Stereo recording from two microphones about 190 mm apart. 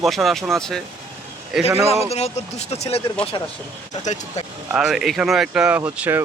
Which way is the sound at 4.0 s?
35° left (ahead or behind).